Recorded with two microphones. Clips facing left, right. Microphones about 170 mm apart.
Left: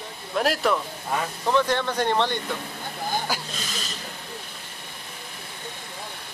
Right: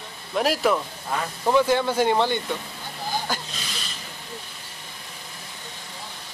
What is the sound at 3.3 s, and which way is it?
Speech, 10° left (ahead or behind).